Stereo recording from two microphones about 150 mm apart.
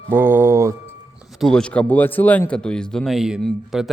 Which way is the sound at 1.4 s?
5° left (ahead or behind).